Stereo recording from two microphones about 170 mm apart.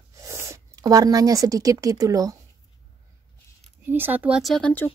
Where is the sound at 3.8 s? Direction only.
10° right (ahead or behind); by 4.8 s 5° left (ahead or behind).